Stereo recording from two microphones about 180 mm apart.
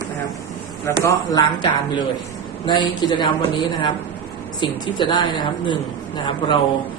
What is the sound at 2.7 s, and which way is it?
A woman's voice, 25° left (ahead or behind).